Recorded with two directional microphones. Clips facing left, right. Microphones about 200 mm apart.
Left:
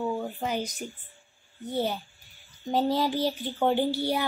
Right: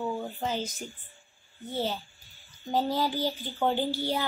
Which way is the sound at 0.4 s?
15° left (ahead or behind).